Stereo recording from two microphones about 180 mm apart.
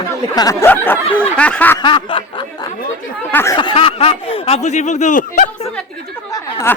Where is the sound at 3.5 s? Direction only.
30° left (ahead or behind); by 5.5 s 45° left (ahead or behind).